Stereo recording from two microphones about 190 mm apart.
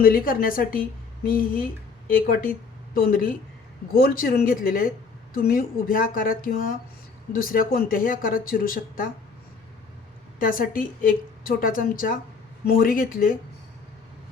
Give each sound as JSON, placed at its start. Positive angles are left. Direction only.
{"t": 0.0, "sound": "a woman's voice", "side_deg": 50}
{"t": 10.4, "sound": "a woman's voice", "side_deg": 50}